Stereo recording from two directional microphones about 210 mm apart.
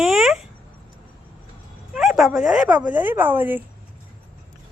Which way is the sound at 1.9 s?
Centre (ahead or behind).